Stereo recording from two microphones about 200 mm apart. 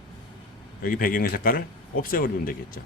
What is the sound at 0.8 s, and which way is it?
A man's voice, 45° left (ahead or behind).